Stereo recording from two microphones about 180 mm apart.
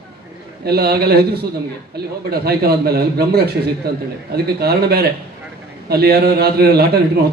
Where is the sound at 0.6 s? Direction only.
60° right (ahead or behind).